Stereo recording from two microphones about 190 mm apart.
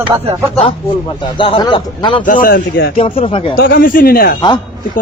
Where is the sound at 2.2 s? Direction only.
45° left (ahead or behind).